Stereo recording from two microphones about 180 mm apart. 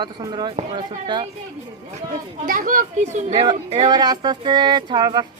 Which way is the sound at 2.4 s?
50° right (ahead or behind).